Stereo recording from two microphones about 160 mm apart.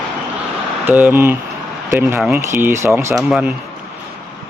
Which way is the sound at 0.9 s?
10° right (ahead or behind).